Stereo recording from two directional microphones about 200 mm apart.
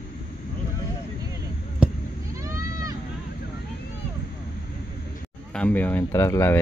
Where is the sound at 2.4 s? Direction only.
15° right (ahead or behind).